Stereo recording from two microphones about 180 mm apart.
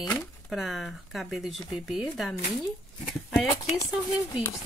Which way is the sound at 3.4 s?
25° left (ahead or behind).